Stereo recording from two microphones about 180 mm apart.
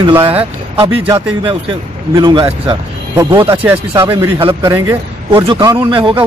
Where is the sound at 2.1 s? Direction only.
25° right (ahead or behind).